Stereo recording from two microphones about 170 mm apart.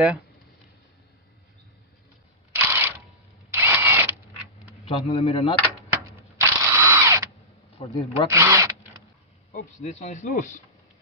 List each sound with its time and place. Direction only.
2.5 s camera: 15° right (ahead or behind)
3.4 s drill: 15° right (ahead or behind)
4.8 s speech: 30° left (ahead or behind)
6.0 s drill: 15° right (ahead or behind)
7.7 s speech: 35° left (ahead or behind)
8.3 s zipper: 20° right (ahead or behind)
9.8 s speech: 45° left (ahead or behind)